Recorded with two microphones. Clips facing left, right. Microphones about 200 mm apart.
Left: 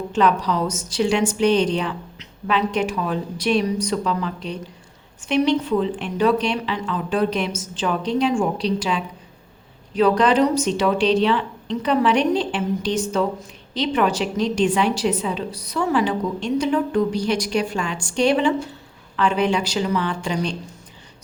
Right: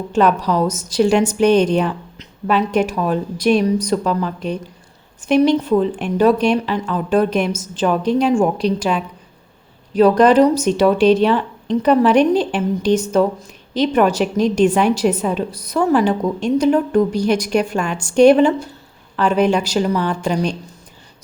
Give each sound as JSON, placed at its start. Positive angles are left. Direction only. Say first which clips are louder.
{"t": 0.1, "sound": "a woman's voice", "louder": "right 4 dB", "side_deg": -45}